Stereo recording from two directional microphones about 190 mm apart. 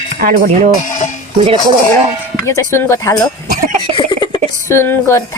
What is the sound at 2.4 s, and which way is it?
Speech, 15° left (ahead or behind).